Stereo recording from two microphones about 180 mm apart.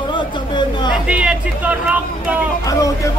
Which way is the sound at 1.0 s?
5° right (ahead or behind).